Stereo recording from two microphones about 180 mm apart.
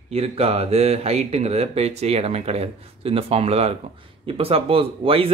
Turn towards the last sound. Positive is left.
turn(degrees=-30)  # may be behind; listen again after turning